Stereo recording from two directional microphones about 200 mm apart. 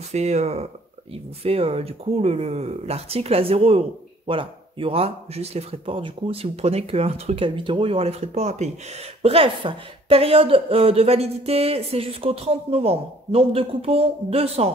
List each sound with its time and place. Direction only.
0.1 s speech: 35° right (ahead or behind)